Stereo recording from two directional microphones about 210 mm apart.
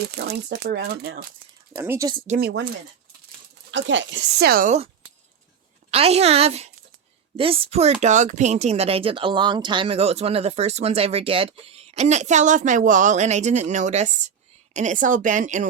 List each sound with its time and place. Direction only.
0.1 s speech: 50° right (ahead or behind)
1.7 s speech: 10° right (ahead or behind)
2.2 s speech: 35° right (ahead or behind)
3.7 s speech: 60° right (ahead or behind); by 4.9 s 35° right (ahead or behind)
5.9 s a woman's voice: 30° right (ahead or behind)